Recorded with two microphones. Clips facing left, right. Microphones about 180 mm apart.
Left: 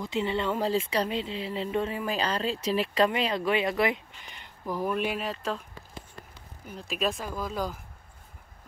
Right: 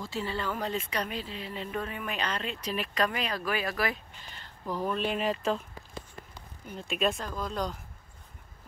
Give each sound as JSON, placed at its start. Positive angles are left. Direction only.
{"t": 0.0, "sound": "speech", "side_deg": 20}
{"t": 6.7, "sound": "speech", "side_deg": 0}